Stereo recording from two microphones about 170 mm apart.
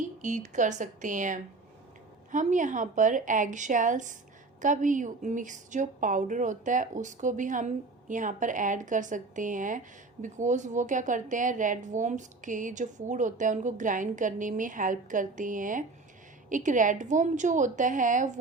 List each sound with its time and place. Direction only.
0.2 s a woman's voice: 45° right (ahead or behind)